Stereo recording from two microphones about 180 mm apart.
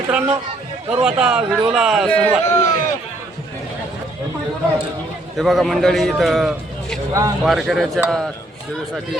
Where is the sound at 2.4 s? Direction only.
15° left (ahead or behind).